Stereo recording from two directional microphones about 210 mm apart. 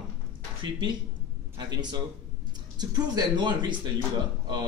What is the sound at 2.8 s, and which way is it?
Speech, 20° right (ahead or behind).